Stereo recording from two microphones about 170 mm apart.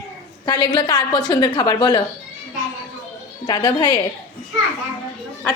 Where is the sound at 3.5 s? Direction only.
25° left (ahead or behind).